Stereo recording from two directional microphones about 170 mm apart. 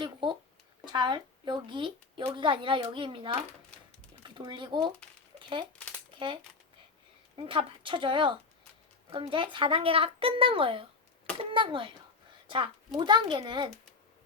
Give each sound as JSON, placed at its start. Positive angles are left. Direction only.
{"t": 0.0, "sound": "a woman's voice", "side_deg": -25}
{"t": 5.4, "sound": "a sound", "side_deg": -30}
{"t": 6.1, "sound": "a woman's voice", "side_deg": -30}